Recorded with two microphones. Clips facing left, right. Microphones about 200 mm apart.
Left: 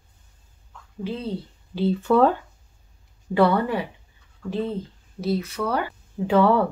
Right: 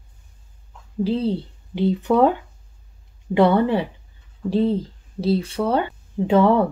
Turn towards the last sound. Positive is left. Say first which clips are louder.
# right 2 dB
turn(degrees=-20)  # may be behind; listen again after turning